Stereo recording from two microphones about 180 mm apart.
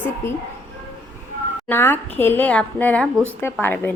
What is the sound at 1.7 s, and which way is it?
A woman's voice, 10° left (ahead or behind).